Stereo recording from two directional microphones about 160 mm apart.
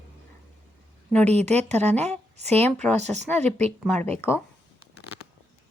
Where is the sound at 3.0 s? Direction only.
45° right (ahead or behind).